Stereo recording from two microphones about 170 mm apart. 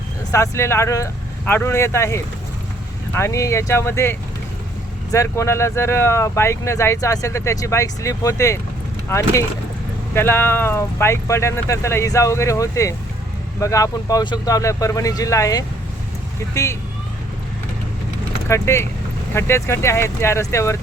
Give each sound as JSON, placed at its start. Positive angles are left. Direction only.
{"t": 0.3, "sound": "speech", "side_deg": 15}
{"t": 18.4, "sound": "speech", "side_deg": 15}